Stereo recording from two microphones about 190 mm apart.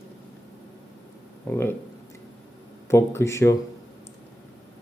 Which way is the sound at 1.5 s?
10° left (ahead or behind).